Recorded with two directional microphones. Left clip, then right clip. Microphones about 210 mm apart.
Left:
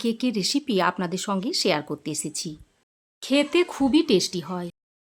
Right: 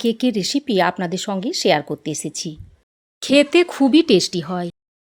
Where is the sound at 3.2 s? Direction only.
25° right (ahead or behind).